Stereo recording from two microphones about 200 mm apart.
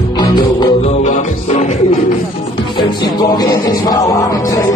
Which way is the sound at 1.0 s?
35° left (ahead or behind).